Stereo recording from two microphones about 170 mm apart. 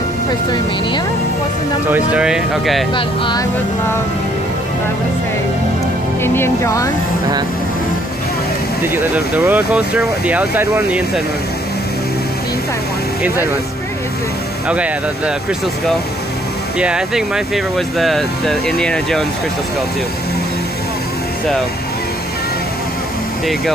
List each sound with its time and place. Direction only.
1.9 s speech: 5° right (ahead or behind)
6.2 s speech: 15° left (ahead or behind)
8.8 s speech: 10° right (ahead or behind)
14.7 s speech: 5° right (ahead or behind)
16.7 s speech: 5° right (ahead or behind)